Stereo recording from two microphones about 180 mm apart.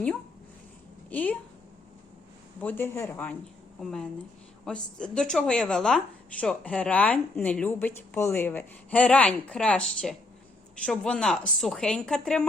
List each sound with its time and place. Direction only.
1.1 s speech: 10° left (ahead or behind)
2.6 s a woman's voice: 10° left (ahead or behind)